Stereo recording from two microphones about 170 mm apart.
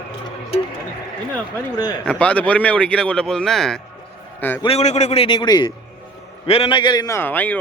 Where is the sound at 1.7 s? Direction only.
25° left (ahead or behind).